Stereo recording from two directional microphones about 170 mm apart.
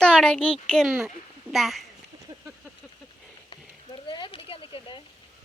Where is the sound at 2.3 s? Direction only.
40° right (ahead or behind).